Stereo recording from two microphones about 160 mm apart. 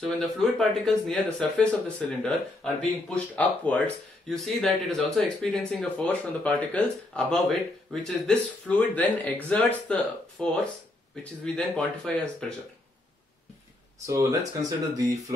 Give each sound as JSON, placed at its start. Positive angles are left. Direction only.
{"t": 0.0, "sound": "speech", "side_deg": 0}
{"t": 14.0, "sound": "speech", "side_deg": -20}